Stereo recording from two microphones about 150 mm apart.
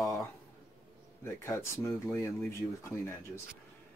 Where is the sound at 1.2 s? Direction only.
20° left (ahead or behind).